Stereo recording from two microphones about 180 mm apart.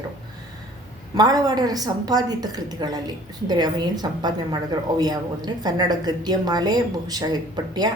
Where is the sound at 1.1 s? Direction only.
20° right (ahead or behind).